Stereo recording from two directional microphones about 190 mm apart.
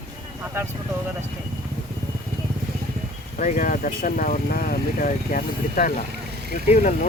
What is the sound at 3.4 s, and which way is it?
Speech, 45° left (ahead or behind).